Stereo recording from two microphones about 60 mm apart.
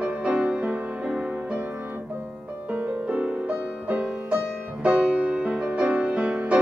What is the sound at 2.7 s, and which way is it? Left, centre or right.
Music, right.